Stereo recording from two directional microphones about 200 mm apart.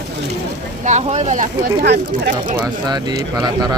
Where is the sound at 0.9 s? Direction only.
35° right (ahead or behind).